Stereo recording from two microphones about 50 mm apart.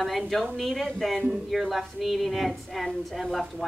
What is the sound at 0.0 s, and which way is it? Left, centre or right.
A woman's voice, centre.